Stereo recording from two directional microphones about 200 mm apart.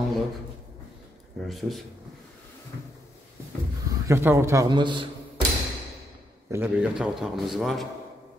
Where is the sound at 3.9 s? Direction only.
15° right (ahead or behind).